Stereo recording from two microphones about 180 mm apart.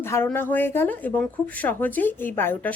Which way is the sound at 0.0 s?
15° left (ahead or behind).